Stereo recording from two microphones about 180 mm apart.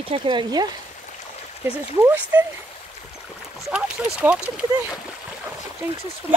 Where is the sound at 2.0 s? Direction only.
10° right (ahead or behind).